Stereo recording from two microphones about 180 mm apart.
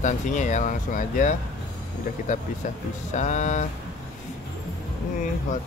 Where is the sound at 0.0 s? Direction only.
45° left (ahead or behind).